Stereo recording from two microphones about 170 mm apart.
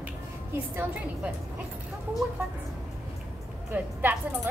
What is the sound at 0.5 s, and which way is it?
Speech, 10° right (ahead or behind).